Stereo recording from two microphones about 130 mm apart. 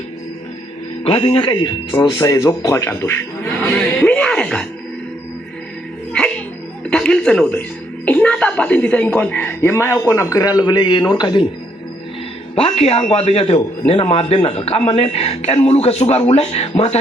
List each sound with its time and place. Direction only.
1.0 s speech: 45° left (ahead or behind); by 4.6 s 5° left (ahead or behind)
6.9 s speech: 5° left (ahead or behind); by 11.4 s 35° left (ahead or behind)
12.5 s a man's voice: 50° left (ahead or behind)